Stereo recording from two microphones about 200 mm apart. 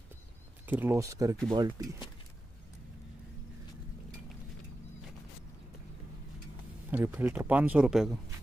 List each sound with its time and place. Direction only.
0.7 s speech: 10° right (ahead or behind)
6.9 s speech: 10° right (ahead or behind)